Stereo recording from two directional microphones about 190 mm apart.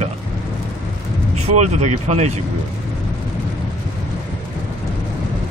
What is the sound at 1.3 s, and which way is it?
Speech, 35° right (ahead or behind).